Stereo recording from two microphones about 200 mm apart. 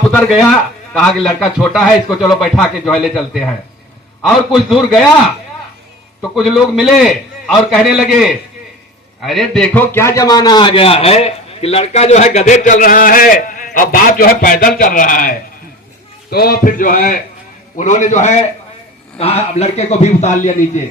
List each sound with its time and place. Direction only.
0.9 s a man's voice: centre (ahead or behind)
6.3 s a man's voice: centre (ahead or behind); by 20.8 s 35° left (ahead or behind)